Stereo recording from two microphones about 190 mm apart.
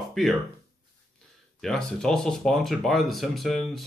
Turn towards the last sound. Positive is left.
turn(degrees=0)  # may be behind; listen again after turning